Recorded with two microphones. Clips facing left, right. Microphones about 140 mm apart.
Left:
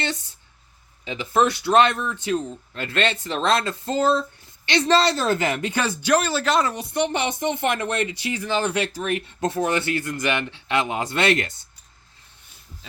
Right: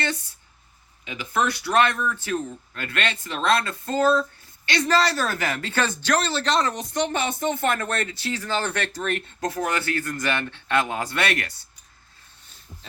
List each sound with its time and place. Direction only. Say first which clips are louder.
1.0 s a man's voice: left 4 dB; 25° left (ahead or behind); by 9.2 s 10° left (ahead or behind)
9.4 s a man's voice: left 4 dB; 25° left (ahead or behind)